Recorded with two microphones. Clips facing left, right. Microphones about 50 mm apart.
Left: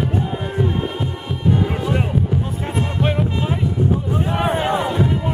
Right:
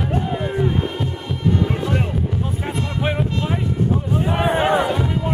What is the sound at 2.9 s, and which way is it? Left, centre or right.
Music, centre.